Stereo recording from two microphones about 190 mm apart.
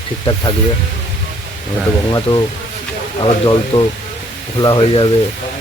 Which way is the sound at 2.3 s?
30° left (ahead or behind).